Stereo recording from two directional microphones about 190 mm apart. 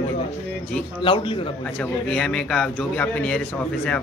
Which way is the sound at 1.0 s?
30° left (ahead or behind).